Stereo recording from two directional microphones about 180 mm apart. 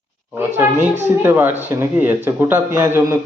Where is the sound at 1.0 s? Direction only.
15° right (ahead or behind).